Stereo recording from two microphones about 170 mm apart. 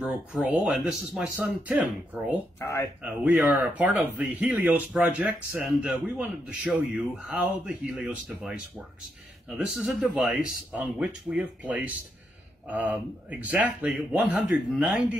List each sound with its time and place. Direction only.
0.0 s a man's voice: 5° right (ahead or behind)
2.6 s speech: 15° left (ahead or behind)
3.0 s a man's voice: 10° right (ahead or behind)